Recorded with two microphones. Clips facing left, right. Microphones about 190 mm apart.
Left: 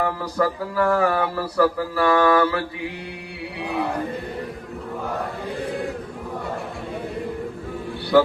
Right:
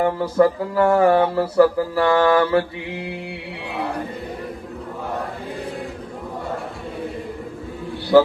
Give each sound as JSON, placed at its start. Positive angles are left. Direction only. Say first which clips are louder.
{"t": 0.0, "sound": "speech", "louder": "right 6 dB", "side_deg": -25}